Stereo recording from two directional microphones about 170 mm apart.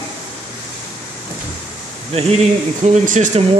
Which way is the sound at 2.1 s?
40° right (ahead or behind).